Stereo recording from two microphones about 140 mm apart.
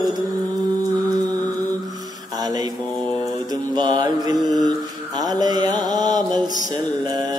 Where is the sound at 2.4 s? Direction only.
30° right (ahead or behind).